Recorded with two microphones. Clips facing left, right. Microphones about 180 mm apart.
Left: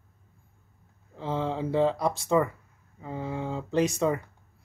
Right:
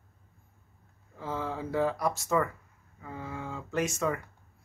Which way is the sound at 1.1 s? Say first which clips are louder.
Left 5 dB; 25° left (ahead or behind).